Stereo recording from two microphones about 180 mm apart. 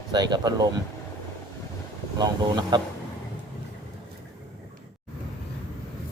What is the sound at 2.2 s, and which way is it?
Speech, 25° right (ahead or behind).